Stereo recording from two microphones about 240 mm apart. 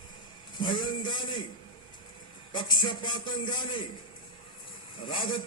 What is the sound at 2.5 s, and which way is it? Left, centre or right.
A man's voice, centre.